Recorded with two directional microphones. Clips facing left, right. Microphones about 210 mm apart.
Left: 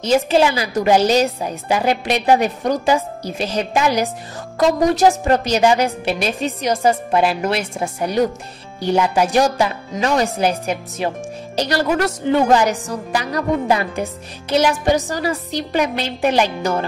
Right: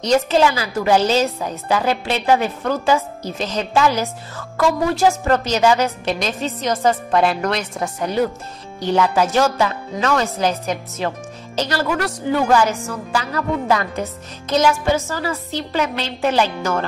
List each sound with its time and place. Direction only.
0.0 s a woman's voice: 10° left (ahead or behind)
14.9 s a woman's voice: 15° left (ahead or behind)